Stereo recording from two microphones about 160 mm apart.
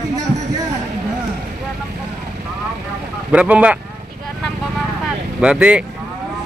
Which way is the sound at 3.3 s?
10° right (ahead or behind).